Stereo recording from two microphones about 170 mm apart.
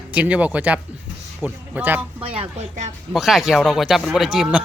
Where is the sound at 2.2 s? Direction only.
35° right (ahead or behind).